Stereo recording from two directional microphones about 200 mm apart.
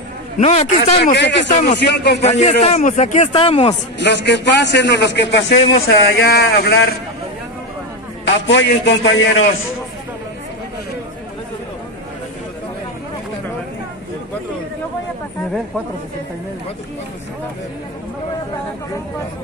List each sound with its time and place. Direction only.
0.4 s speech: 35° left (ahead or behind)
1.1 s a man's voice: 60° left (ahead or behind)
1.5 s speech: 30° left (ahead or behind)
1.8 s a man's voice: 55° left (ahead or behind)
2.2 s speech: 35° left (ahead or behind)
4.0 s a man's voice: 60° left (ahead or behind)
8.5 s a man's voice: 65° left (ahead or behind)